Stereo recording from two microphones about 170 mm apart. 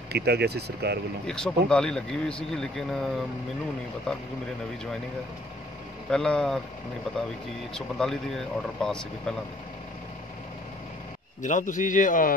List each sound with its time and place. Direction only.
0.1 s speech: 75° right (ahead or behind)
1.2 s speech: 5° left (ahead or behind)
6.0 s speech: 5° left (ahead or behind)
7.7 s speech: 5° left (ahead or behind)
11.4 s a man's voice: 50° left (ahead or behind)